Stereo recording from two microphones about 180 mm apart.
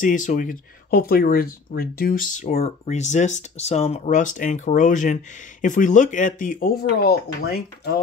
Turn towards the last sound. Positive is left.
turn(degrees=60)  # may be behind; listen again after turning